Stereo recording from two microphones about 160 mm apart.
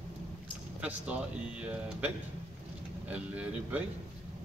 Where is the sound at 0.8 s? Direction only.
10° right (ahead or behind).